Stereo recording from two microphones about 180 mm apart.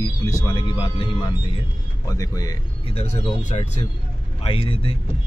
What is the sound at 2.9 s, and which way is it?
Speech, 35° left (ahead or behind).